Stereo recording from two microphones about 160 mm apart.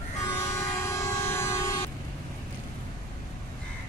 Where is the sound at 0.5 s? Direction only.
15° left (ahead or behind).